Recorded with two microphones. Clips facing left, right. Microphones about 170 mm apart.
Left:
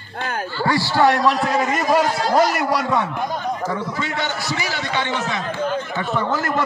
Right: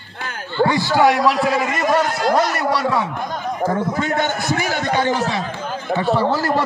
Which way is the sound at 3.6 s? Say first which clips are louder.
Right 5 dB; 50° right (ahead or behind).